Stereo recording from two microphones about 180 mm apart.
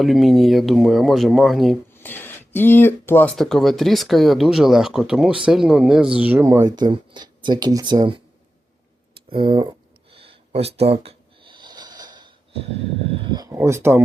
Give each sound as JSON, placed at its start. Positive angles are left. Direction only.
{"t": 0.0, "sound": "speech", "side_deg": 0}
{"t": 1.9, "sound": "speech", "side_deg": 10}
{"t": 9.3, "sound": "speech", "side_deg": -25}
{"t": 10.1, "sound": "a sound", "side_deg": -30}
{"t": 13.3, "sound": "speech", "side_deg": -20}